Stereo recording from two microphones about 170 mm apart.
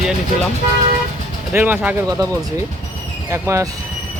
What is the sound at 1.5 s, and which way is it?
Speech, 10° right (ahead or behind).